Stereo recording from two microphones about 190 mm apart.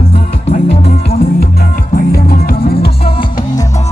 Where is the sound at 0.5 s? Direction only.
35° left (ahead or behind).